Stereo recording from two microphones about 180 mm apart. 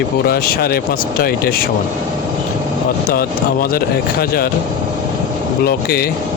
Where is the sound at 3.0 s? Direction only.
55° left (ahead or behind).